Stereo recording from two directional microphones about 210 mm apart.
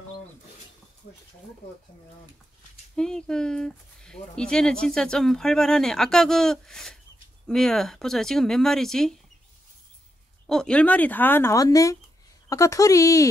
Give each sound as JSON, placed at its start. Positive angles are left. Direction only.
{"t": 3.0, "sound": "speech", "side_deg": 5}
{"t": 10.4, "sound": "speech", "side_deg": 0}